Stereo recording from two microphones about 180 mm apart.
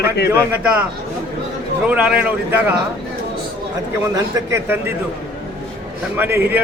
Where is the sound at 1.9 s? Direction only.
5° right (ahead or behind).